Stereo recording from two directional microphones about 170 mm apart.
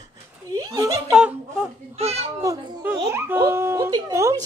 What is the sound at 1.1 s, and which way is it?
Speech, 5° right (ahead or behind).